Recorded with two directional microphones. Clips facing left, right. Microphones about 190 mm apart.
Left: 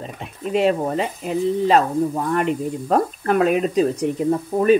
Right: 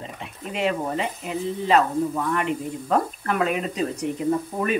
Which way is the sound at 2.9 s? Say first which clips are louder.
Left 4 dB; 40° left (ahead or behind).